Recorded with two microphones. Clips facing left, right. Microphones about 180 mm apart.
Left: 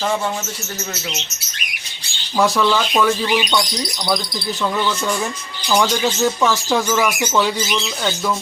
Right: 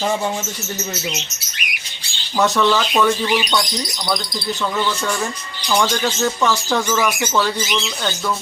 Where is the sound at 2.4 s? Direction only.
Centre (ahead or behind).